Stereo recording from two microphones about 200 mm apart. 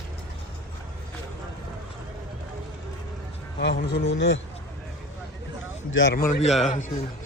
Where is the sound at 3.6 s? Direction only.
55° left (ahead or behind).